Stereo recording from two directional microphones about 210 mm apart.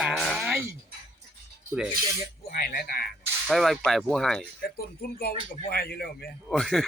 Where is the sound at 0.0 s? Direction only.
5° right (ahead or behind).